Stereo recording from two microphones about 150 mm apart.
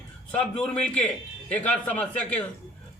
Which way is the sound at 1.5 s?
10° left (ahead or behind).